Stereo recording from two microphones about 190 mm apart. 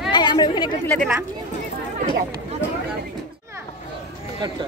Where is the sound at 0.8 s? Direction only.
Centre (ahead or behind).